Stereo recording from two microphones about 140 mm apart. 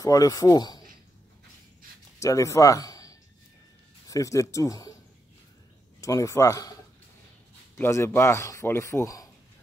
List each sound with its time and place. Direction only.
0.0 s speech: 25° left (ahead or behind)
2.1 s speech: 20° left (ahead or behind)
5.9 s speech: 25° left (ahead or behind)